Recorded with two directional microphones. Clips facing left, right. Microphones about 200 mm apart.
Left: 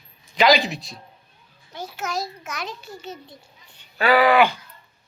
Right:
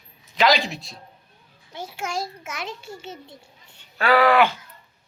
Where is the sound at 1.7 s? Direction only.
25° right (ahead or behind).